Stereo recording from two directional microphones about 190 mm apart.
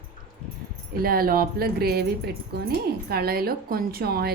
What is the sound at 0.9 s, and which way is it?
Speech, 50° right (ahead or behind).